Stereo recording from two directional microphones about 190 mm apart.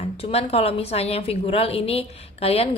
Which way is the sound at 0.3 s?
30° left (ahead or behind).